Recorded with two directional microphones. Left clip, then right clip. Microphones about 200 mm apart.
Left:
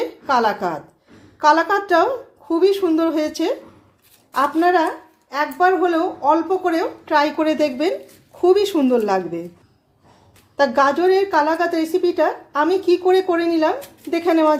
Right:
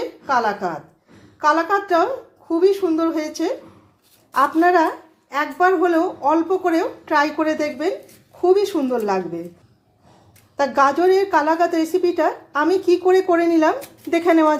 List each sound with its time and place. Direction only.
0.3 s a woman's voice: 15° left (ahead or behind)
7.3 s speech: 15° left (ahead or behind)
10.6 s a woman's voice: 5° left (ahead or behind)